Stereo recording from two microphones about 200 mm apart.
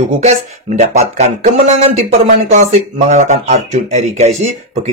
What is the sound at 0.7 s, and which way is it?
Speech, 35° right (ahead or behind).